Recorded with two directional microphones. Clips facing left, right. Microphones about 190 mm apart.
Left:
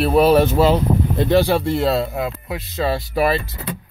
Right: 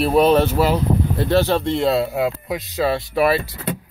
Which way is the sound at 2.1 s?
15° right (ahead or behind).